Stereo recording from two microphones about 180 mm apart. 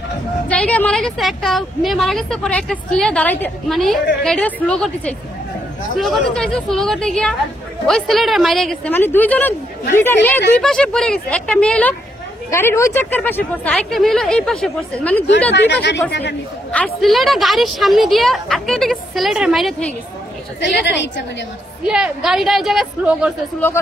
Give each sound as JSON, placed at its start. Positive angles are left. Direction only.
{"t": 0.5, "sound": "a woman's voice", "side_deg": 5}
{"t": 8.9, "sound": "a woman's voice", "side_deg": 10}
{"t": 15.5, "sound": "speech", "side_deg": 75}
{"t": 16.7, "sound": "a woman's voice", "side_deg": 0}
{"t": 21.8, "sound": "a woman's voice", "side_deg": -5}